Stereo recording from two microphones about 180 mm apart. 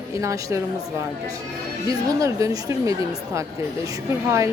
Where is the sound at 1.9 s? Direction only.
20° right (ahead or behind).